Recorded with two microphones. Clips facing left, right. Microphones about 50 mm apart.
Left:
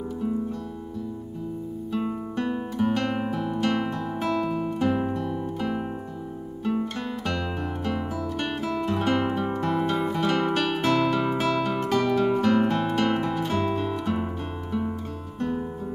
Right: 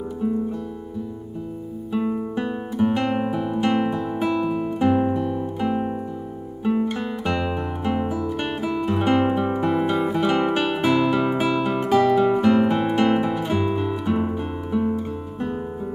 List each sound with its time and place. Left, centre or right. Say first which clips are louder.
1.9 s guitar: right 6 dB; centre
6.6 s music: right 5 dB; centre